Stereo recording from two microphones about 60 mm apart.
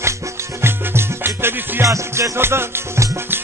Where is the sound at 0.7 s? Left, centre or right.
Right.